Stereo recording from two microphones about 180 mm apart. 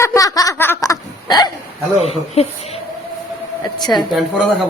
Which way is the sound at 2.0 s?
35° left (ahead or behind).